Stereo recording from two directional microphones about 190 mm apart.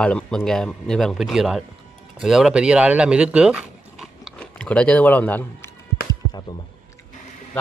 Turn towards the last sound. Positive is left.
turn(degrees=20)  # may be behind; listen again after turning